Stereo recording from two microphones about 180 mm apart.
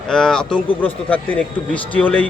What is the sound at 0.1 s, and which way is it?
Speech, 5° left (ahead or behind).